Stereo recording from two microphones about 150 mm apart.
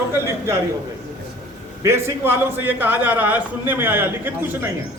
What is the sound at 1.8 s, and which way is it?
A man's voice, 15° right (ahead or behind).